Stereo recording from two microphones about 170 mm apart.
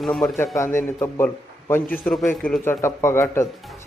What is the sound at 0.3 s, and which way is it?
Speech, 15° left (ahead or behind).